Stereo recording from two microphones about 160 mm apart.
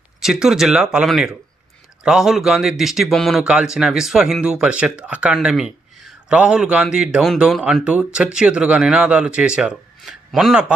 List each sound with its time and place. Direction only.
0.2 s speech: 5° right (ahead or behind)